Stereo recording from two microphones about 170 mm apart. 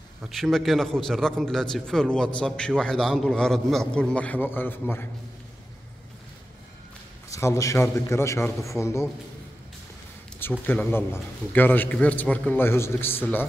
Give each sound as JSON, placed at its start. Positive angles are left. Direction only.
{"t": 0.2, "sound": "a man's voice", "side_deg": 0}
{"t": 7.2, "sound": "a man's voice", "side_deg": 20}
{"t": 10.7, "sound": "a man's voice", "side_deg": 10}